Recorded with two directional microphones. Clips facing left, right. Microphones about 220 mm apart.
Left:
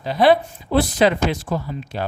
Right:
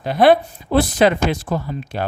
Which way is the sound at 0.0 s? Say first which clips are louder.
Right 2 dB; 55° right (ahead or behind).